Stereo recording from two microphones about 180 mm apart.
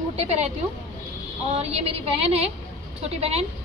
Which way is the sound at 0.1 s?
35° right (ahead or behind).